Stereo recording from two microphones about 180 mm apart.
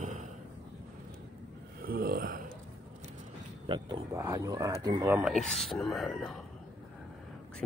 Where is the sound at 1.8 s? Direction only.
55° right (ahead or behind).